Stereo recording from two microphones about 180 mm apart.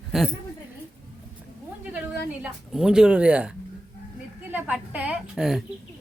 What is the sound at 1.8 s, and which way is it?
A woman's voice, 10° right (ahead or behind).